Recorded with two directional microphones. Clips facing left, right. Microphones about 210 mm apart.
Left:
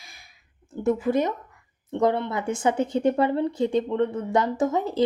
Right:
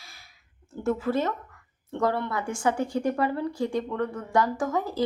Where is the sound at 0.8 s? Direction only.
15° left (ahead or behind).